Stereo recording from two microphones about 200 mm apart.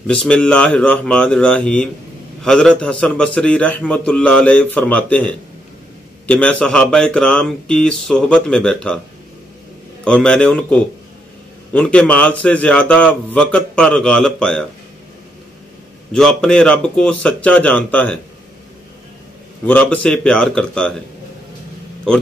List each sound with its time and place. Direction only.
0.0 s a man's voice: 5° left (ahead or behind)
10.0 s a man's voice: 5° left (ahead or behind)
16.1 s speech: 5° left (ahead or behind)
19.6 s speech: 5° left (ahead or behind)